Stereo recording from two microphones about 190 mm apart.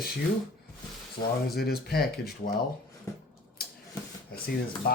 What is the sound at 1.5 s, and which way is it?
Speech, 55° left (ahead or behind).